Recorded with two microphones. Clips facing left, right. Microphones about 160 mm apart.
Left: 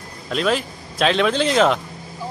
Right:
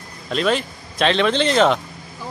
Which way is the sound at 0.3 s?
Centre (ahead or behind).